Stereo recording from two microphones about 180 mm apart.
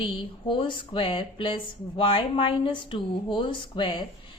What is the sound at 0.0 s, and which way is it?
A woman's voice, 25° left (ahead or behind).